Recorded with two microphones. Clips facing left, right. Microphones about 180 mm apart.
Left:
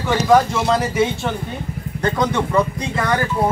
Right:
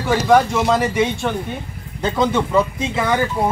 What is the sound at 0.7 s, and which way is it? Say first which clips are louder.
Speech: left 1 dB; centre (ahead or behind).